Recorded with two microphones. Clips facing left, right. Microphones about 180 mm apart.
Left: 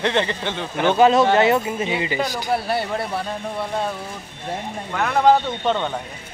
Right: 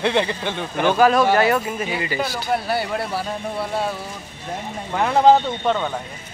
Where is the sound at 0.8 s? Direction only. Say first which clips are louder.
Left 1 dB; 20° left (ahead or behind).